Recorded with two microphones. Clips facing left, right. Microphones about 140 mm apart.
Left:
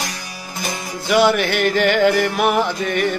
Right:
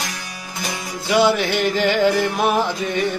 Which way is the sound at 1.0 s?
20° right (ahead or behind).